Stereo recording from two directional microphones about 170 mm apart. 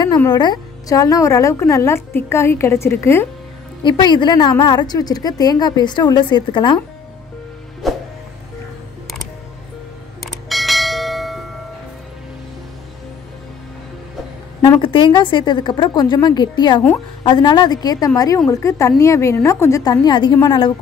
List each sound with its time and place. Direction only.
0.3 s a woman's voice: 25° left (ahead or behind)
3.8 s a woman's voice: 25° left (ahead or behind)
7.8 s music: centre (ahead or behind)
10.2 s bell: centre (ahead or behind)
14.8 s a woman's voice: 30° left (ahead or behind)